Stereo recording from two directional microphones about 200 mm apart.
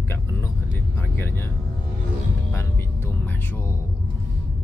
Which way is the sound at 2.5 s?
10° left (ahead or behind).